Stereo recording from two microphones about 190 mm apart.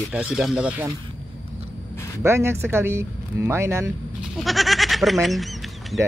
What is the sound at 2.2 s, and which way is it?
Speech, 15° right (ahead or behind).